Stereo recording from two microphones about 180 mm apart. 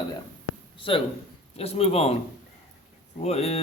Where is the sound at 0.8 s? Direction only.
30° left (ahead or behind).